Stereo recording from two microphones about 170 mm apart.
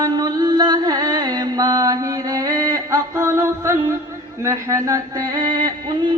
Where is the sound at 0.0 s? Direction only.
25° right (ahead or behind).